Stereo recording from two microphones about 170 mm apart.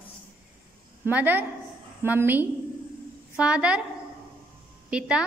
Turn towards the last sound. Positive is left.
turn(degrees=-5)  # may be behind; listen again after turning